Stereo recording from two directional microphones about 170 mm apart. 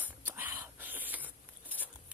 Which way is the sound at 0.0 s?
10° right (ahead or behind).